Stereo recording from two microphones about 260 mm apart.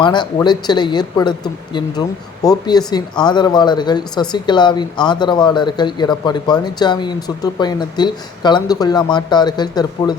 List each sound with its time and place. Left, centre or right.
0.0 s speech: centre